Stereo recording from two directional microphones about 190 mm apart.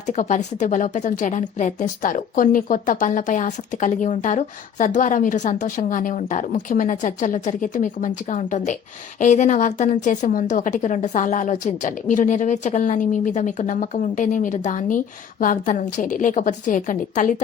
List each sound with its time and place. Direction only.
0.1 s a woman's voice: 40° left (ahead or behind)